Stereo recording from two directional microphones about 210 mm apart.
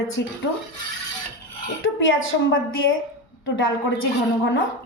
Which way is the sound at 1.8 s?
65° left (ahead or behind).